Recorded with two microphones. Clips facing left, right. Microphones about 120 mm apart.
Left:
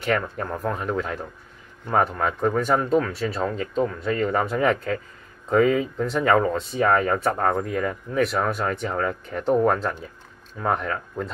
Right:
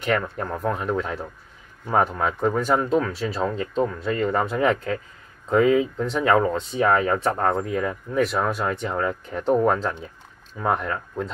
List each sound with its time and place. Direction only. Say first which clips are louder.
0.0 s speech: even; centre (ahead or behind)